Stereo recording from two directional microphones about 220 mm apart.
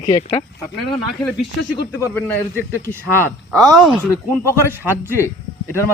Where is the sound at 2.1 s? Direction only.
10° left (ahead or behind).